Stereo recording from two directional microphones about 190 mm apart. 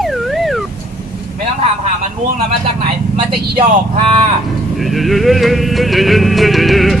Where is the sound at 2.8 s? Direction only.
25° right (ahead or behind).